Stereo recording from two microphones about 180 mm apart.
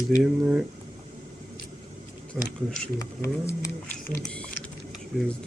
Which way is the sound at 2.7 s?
5° left (ahead or behind).